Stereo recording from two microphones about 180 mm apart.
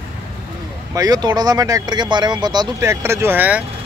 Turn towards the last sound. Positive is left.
turn(degrees=-10)  # may be behind; listen again after turning